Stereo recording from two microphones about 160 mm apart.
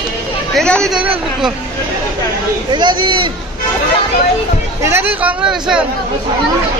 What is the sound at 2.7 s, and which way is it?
Speech, 30° right (ahead or behind).